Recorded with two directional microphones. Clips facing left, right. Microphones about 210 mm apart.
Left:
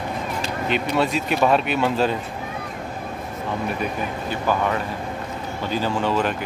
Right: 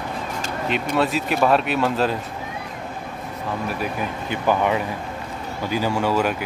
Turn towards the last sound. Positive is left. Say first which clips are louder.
# right 1 dB
turn(degrees=-10)  # may be behind; listen again after turning